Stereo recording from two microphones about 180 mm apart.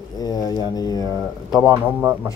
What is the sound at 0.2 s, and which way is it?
Speech, 20° left (ahead or behind).